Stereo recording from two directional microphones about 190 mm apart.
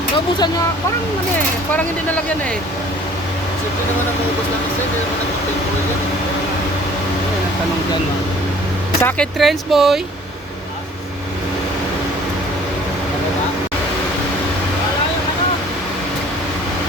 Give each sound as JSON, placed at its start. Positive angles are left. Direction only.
{"t": 9.0, "sound": "speech", "side_deg": 10}
{"t": 9.4, "sound": "speech", "side_deg": 0}